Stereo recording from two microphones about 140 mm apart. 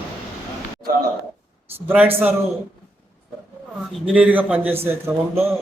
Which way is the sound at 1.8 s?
10° right (ahead or behind).